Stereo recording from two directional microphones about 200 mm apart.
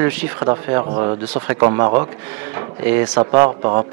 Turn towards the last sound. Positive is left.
turn(degrees=-25)  # may be behind; listen again after turning